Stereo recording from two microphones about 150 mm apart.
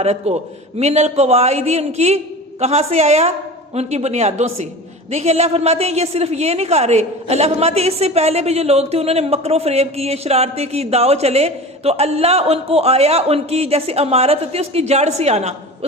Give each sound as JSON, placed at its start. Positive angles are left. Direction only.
{"t": 0.0, "sound": "a woman's voice", "side_deg": -45}